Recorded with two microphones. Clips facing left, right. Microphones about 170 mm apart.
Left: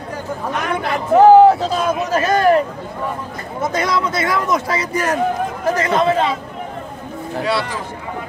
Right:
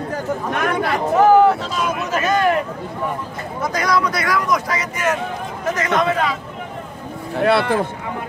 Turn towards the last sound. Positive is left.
turn(degrees=-55)  # may be behind; listen again after turning